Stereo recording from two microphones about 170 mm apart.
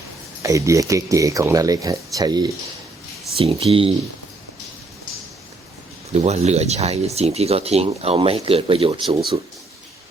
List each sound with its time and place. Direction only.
0.4 s speech: 20° right (ahead or behind)
3.3 s speech: 35° right (ahead or behind)
6.1 s speech: 40° right (ahead or behind)